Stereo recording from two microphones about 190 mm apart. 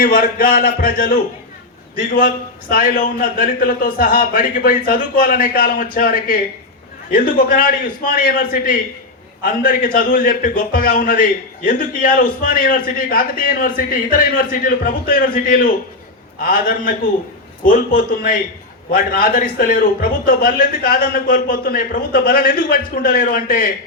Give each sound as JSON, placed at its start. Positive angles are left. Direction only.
{"t": 0.0, "sound": "a man's voice", "side_deg": 50}